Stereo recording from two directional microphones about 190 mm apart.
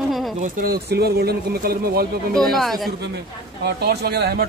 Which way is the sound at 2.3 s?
Centre (ahead or behind).